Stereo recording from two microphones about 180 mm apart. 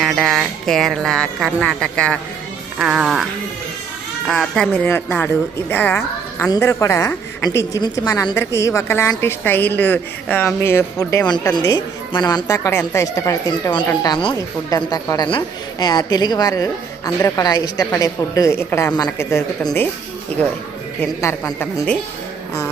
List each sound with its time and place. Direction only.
0.0 s speech: centre (ahead or behind)
4.3 s speech: centre (ahead or behind)
4.8 s a woman's voice: 10° left (ahead or behind)
21.0 s a woman's voice: 15° left (ahead or behind)